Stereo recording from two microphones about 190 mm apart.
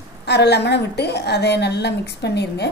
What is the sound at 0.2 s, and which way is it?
A woman's voice, 60° left (ahead or behind).